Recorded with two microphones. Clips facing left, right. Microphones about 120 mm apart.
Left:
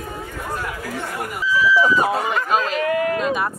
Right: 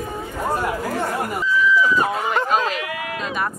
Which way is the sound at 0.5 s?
30° right (ahead or behind).